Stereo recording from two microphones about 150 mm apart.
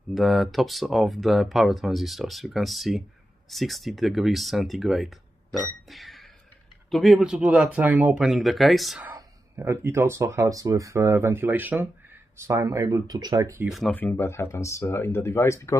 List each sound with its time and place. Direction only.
0.1 s speech: centre (ahead or behind)
5.9 s music: centre (ahead or behind)
6.9 s speech: centre (ahead or behind)
9.1 s speech: 20° right (ahead or behind)
13.7 s speech: centre (ahead or behind)
13.9 s speech: 15° left (ahead or behind)